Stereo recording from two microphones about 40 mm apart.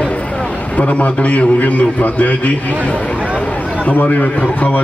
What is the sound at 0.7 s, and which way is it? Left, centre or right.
A man's voice, left.